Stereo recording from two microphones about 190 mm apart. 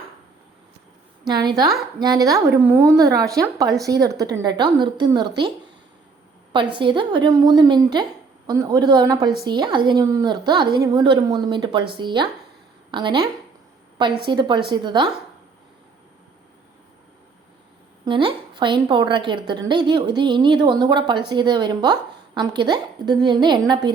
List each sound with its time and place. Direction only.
1.5 s a woman's voice: 20° right (ahead or behind)
6.5 s a woman's voice: 25° right (ahead or behind)
14.3 s a woman's voice: 25° right (ahead or behind)
18.0 s a woman's voice: 25° right (ahead or behind)